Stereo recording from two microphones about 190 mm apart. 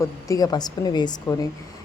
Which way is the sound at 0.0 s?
20° left (ahead or behind).